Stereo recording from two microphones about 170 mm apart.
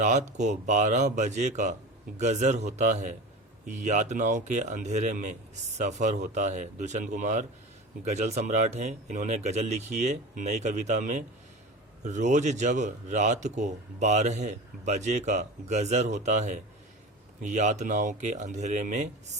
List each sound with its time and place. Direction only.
0.0 s speech: 45° right (ahead or behind)